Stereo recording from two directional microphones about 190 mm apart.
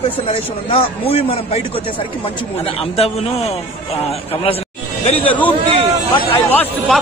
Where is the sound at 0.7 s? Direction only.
30° left (ahead or behind).